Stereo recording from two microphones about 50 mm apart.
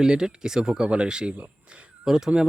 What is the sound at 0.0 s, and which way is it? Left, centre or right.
Speech, centre.